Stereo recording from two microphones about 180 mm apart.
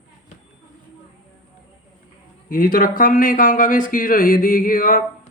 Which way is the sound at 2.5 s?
50° left (ahead or behind).